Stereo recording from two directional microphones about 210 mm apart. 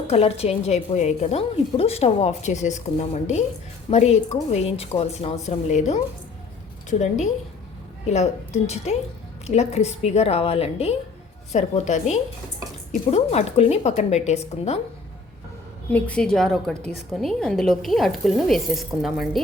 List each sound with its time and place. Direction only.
0.1 s a woman's voice: 30° left (ahead or behind)
8.0 s a woman's voice: 30° left (ahead or behind)
15.9 s a woman's voice: 5° left (ahead or behind)